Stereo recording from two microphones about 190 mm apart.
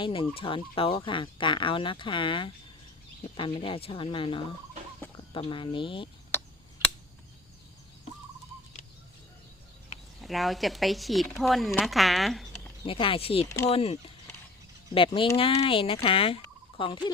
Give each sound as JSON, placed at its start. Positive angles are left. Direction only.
{"t": 0.0, "sound": "fowl", "side_deg": 25}
{"t": 5.1, "sound": "speech", "side_deg": 25}
{"t": 10.2, "sound": "speech", "side_deg": 0}
{"t": 12.8, "sound": "fowl", "side_deg": 30}
{"t": 13.7, "sound": "speech", "side_deg": 30}
{"t": 14.9, "sound": "fowl", "side_deg": 25}